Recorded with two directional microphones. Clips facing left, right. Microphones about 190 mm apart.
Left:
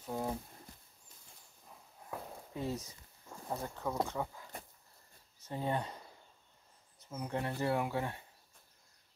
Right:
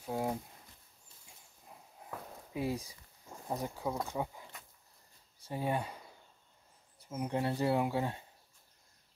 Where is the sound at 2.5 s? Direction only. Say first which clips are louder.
Right 3 dB; 10° right (ahead or behind).